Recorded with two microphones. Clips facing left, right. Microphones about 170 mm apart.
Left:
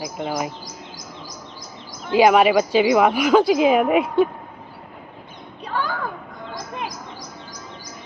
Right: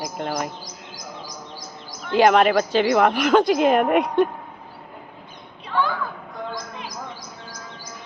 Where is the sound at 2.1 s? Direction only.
10° left (ahead or behind).